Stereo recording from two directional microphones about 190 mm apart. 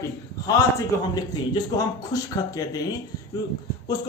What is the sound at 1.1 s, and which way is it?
Speech, 20° left (ahead or behind).